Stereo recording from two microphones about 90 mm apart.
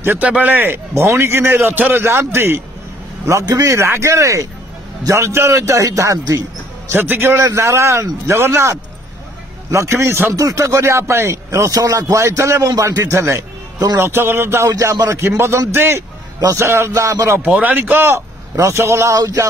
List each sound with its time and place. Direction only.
0.0 s a man's voice: 25° right (ahead or behind)
6.9 s a man's voice: 25° right (ahead or behind)
17.4 s a man's voice: 15° right (ahead or behind); by 19.4 s 40° right (ahead or behind)